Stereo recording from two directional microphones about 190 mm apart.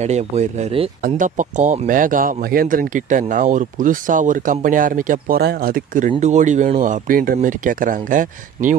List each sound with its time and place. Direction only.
0.0 s speech: 35° right (ahead or behind)